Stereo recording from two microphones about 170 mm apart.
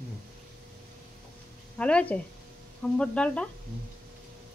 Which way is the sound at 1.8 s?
5° left (ahead or behind).